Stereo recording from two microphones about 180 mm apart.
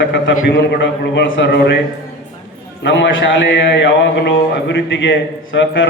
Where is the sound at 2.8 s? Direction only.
90° left.